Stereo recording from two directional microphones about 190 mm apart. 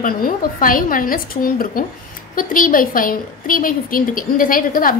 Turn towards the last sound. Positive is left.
turn(degrees=50)  # may be behind; listen again after turning